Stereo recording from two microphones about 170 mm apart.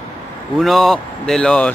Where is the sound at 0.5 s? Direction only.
Centre (ahead or behind).